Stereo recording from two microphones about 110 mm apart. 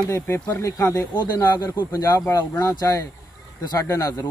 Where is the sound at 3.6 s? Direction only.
30° left (ahead or behind).